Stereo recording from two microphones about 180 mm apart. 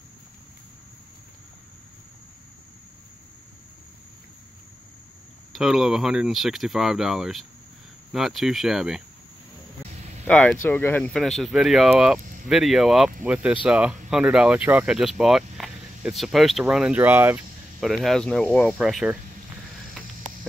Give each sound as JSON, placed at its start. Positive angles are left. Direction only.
{"t": 5.5, "sound": "speech", "side_deg": 0}
{"t": 9.9, "sound": "vehicle", "side_deg": -40}
{"t": 10.2, "sound": "speech", "side_deg": 5}
{"t": 17.7, "sound": "speech", "side_deg": 0}